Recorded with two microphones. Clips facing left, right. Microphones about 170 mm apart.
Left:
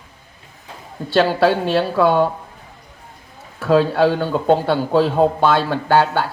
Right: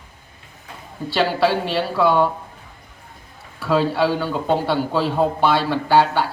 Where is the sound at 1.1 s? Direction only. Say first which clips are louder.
Left 4 dB; 45° left (ahead or behind).